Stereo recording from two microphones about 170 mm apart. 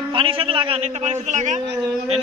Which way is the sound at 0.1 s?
30° right (ahead or behind).